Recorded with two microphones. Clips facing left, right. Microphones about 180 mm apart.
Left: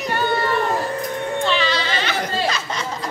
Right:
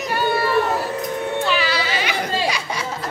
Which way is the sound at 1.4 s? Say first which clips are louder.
Left 2 dB; 10° right (ahead or behind).